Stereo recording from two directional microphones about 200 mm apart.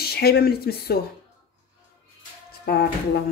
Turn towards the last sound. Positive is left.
turn(degrees=50)  # may be behind; listen again after turning